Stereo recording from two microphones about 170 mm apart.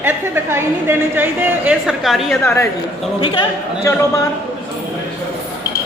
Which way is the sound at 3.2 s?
30° left (ahead or behind).